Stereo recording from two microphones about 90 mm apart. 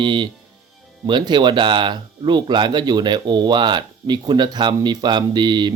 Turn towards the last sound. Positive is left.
turn(degrees=-55)  # may be behind; listen again after turning